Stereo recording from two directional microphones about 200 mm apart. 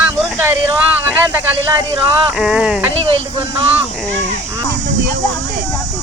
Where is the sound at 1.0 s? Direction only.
15° right (ahead or behind).